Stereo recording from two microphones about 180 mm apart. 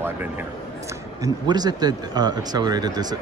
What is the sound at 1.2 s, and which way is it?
Speech, 20° right (ahead or behind).